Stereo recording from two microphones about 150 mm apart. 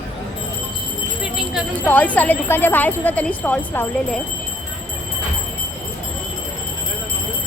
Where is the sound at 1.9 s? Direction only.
10° left (ahead or behind).